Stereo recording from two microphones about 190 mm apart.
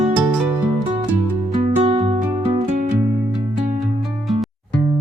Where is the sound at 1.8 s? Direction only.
30° right (ahead or behind).